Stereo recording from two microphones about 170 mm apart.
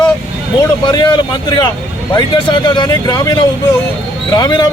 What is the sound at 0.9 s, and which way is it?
Speech, 25° left (ahead or behind).